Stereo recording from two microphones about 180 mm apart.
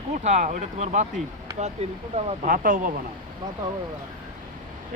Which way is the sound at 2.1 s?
50° right (ahead or behind).